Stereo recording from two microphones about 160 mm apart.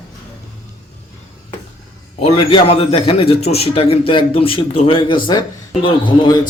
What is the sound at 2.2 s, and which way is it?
A man's voice, 35° left (ahead or behind).